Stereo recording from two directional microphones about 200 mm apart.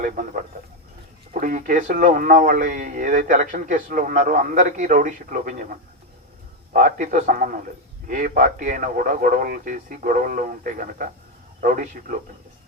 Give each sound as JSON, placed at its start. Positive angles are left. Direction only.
{"t": 0.0, "sound": "speech", "side_deg": -40}
{"t": 6.7, "sound": "a man's voice", "side_deg": -40}